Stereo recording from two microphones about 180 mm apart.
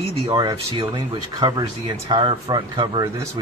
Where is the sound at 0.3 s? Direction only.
25° right (ahead or behind).